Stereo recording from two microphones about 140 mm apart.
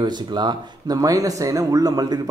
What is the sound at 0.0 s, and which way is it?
Speech, 30° right (ahead or behind).